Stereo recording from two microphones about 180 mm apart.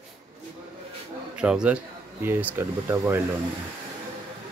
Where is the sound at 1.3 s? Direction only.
5° right (ahead or behind).